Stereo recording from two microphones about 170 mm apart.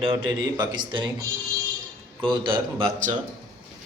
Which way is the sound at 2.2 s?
30° right (ahead or behind).